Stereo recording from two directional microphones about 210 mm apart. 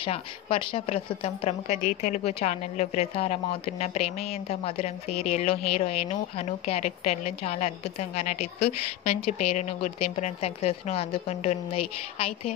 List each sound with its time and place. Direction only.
0.0 s a woman's voice: 25° left (ahead or behind)